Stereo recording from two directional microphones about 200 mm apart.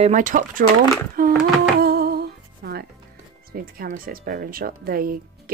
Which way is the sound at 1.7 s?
50° right (ahead or behind).